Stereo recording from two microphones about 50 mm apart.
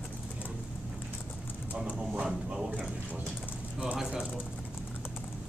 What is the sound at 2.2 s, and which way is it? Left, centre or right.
Speech, centre.